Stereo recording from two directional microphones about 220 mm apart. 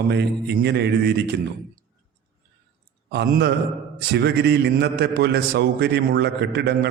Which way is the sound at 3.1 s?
50° right (ahead or behind).